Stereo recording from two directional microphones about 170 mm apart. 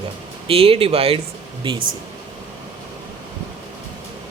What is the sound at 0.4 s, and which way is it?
Speech, 35° right (ahead or behind).